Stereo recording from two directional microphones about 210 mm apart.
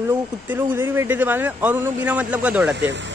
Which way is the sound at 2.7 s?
55° right (ahead or behind).